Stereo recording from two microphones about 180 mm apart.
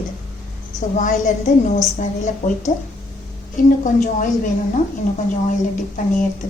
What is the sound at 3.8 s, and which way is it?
Speech, 45° left (ahead or behind).